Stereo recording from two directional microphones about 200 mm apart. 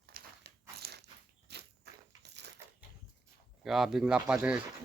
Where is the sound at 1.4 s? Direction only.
55° right (ahead or behind).